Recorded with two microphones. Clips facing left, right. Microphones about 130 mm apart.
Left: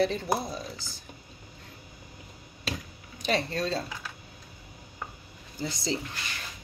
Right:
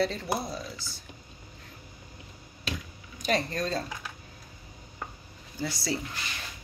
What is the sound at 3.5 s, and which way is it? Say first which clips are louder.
Speech: left 1 dB; 30° left (ahead or behind).